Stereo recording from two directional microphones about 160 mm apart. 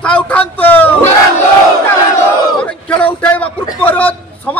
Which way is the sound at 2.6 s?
10° left (ahead or behind).